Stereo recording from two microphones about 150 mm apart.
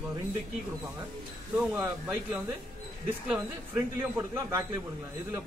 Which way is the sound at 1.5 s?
10° right (ahead or behind).